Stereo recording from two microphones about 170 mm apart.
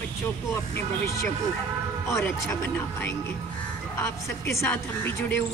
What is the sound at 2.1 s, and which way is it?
Speech, 15° left (ahead or behind).